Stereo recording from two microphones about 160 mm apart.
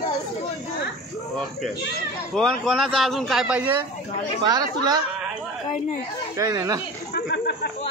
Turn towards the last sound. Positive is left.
turn(degrees=90)